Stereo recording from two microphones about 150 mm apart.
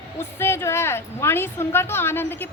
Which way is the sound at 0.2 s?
15° left (ahead or behind).